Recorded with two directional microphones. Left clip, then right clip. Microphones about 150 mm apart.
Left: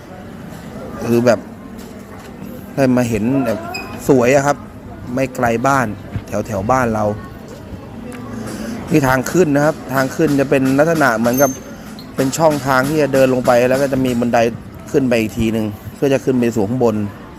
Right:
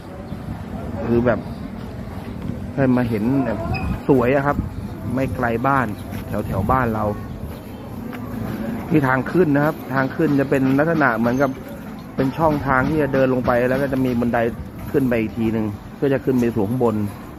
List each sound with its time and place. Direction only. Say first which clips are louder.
1.1 s speech: left 6 dB; 30° left (ahead or behind)
2.7 s speech: left 5 dB; 30° left (ahead or behind)
8.9 s speech: left 4 dB; 25° left (ahead or behind)